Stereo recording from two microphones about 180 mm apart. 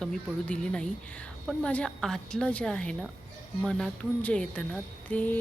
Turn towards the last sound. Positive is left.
turn(degrees=10)  # may be behind; listen again after turning